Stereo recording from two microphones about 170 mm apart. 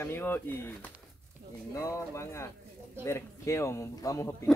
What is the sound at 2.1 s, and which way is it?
Speech, 15° left (ahead or behind).